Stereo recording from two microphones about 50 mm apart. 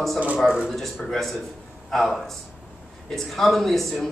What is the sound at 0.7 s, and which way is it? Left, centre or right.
A man's voice, centre.